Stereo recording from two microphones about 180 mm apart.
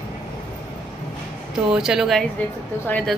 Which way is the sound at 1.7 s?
5° right (ahead or behind).